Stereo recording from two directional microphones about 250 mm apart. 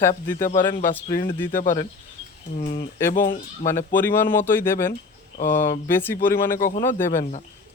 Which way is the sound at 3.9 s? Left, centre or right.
Centre.